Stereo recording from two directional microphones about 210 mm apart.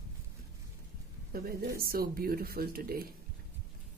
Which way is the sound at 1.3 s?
45° right (ahead or behind).